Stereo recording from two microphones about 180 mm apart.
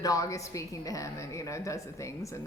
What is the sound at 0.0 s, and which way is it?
A woman's voice, 20° left (ahead or behind).